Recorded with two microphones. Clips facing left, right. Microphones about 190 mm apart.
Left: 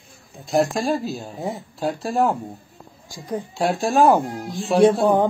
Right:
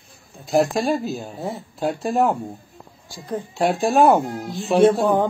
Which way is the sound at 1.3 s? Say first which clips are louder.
Left 1 dB; 15° left (ahead or behind).